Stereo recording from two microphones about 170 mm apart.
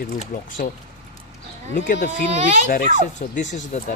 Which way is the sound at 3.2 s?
45° left (ahead or behind).